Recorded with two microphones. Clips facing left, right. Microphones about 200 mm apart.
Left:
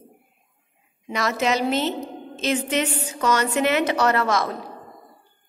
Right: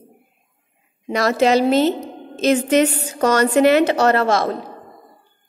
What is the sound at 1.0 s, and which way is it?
A woman's voice, 35° right (ahead or behind).